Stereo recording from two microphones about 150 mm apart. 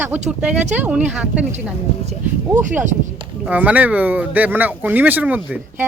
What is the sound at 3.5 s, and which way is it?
Speech, 10° right (ahead or behind).